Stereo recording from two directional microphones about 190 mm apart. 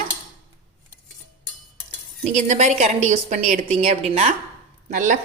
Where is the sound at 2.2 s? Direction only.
40° right (ahead or behind).